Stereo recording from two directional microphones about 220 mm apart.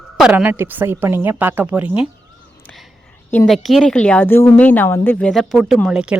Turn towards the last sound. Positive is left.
turn(degrees=-5)  # may be behind; listen again after turning